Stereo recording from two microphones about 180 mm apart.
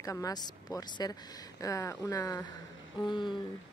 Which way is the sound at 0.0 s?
20° left (ahead or behind).